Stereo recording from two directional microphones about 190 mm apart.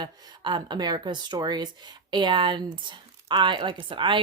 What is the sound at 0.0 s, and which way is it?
Speech, 25° right (ahead or behind).